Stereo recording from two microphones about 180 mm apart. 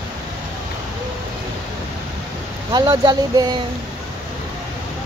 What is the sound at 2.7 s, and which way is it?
Speech, 25° right (ahead or behind).